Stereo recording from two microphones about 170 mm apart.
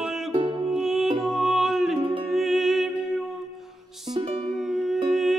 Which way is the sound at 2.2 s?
Centre (ahead or behind).